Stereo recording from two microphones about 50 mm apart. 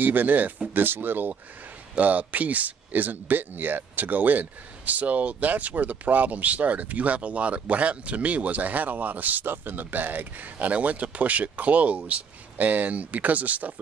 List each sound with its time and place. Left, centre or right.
0.0 s speech: right